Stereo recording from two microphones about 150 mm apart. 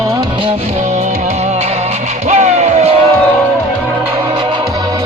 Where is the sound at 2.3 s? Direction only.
50° right (ahead or behind).